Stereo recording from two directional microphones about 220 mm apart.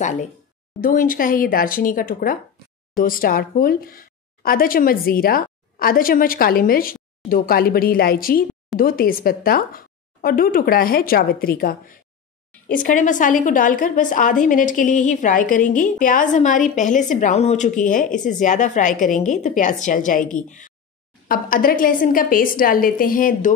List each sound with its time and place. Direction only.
0.0 s a woman's voice: 35° left (ahead or behind)